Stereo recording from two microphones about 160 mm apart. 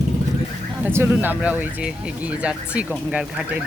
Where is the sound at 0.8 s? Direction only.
15° right (ahead or behind).